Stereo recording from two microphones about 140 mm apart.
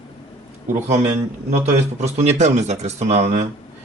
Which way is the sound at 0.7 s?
60° right (ahead or behind).